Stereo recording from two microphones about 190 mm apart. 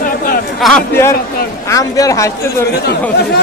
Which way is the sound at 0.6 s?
Centre (ahead or behind).